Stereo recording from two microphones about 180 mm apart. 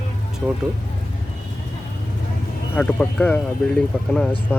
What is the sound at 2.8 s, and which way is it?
Speech, 10° left (ahead or behind).